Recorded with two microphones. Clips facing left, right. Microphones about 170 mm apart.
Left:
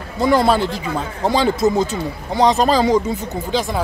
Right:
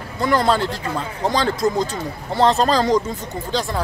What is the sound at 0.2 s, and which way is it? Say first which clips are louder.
Speech: left 3 dB; 10° left (ahead or behind).